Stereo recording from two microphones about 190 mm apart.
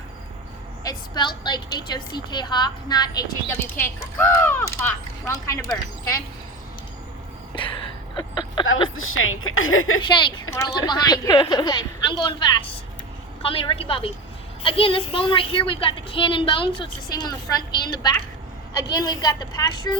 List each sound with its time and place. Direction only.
0.9 s a woman's voice: 25° left (ahead or behind)
7.5 s a sound: 25° left (ahead or behind)
9.0 s speech: 90° left
10.0 s a woman's voice: 25° left (ahead or behind)
13.4 s a woman's voice: 30° left (ahead or behind)